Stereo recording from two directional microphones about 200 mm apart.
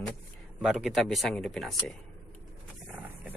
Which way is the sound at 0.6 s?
5° right (ahead or behind).